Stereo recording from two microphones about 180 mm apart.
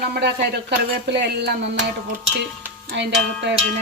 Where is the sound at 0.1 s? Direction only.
70° right (ahead or behind).